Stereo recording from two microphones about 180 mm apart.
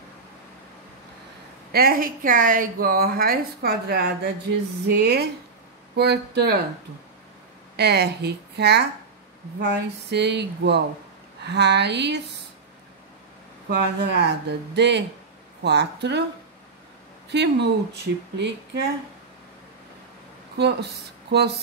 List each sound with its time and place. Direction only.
1.7 s a woman's voice: 55° right (ahead or behind)
7.7 s speech: 65° right (ahead or behind)
13.7 s speech: 70° right (ahead or behind)
17.3 s speech: 70° right (ahead or behind)
20.5 s speech: 65° right (ahead or behind)